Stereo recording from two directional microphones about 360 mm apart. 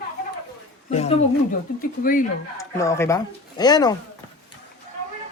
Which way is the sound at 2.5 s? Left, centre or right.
Centre.